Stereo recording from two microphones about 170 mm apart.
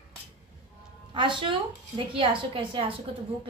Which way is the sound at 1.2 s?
30° right (ahead or behind).